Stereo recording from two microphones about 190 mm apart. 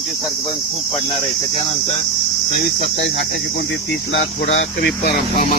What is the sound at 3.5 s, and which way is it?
Speech, 60° left (ahead or behind).